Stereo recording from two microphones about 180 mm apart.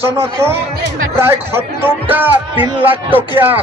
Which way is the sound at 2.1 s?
10° right (ahead or behind).